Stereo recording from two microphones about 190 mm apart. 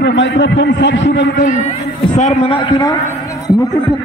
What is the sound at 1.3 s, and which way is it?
A man's voice, 40° left (ahead or behind).